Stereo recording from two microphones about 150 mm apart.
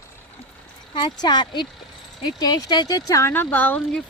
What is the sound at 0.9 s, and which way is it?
Speech, 30° left (ahead or behind).